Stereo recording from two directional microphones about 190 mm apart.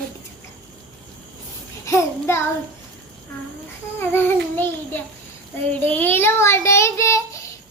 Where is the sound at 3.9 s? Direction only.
10° left (ahead or behind).